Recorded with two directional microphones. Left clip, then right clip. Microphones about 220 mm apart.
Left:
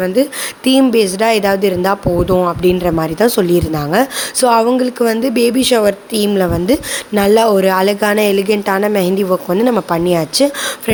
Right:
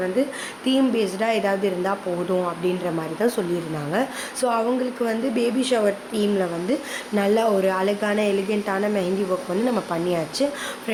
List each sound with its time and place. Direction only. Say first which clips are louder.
0.0 s a woman's voice: left 9 dB; 50° left (ahead or behind)